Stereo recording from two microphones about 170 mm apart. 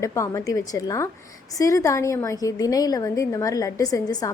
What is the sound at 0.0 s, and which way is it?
A woman's voice, 20° left (ahead or behind).